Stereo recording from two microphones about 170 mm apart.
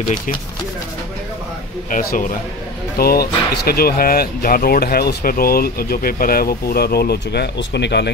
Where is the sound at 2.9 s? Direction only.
65° left (ahead or behind).